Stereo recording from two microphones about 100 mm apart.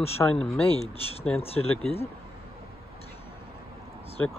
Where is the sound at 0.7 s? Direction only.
80° left.